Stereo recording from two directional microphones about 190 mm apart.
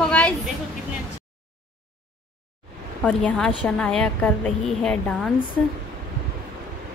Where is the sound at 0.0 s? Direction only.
5° left (ahead or behind).